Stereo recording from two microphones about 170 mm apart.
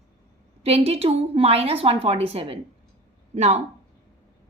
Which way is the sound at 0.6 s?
35° right (ahead or behind).